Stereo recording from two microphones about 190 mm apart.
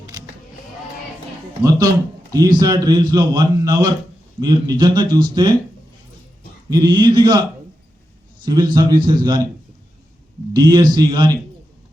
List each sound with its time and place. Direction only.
2.3 s a man's voice: 20° right (ahead or behind)
6.7 s a man's voice: 20° right (ahead or behind)
8.4 s a man's voice: 20° right (ahead or behind)
10.5 s a man's voice: 20° right (ahead or behind)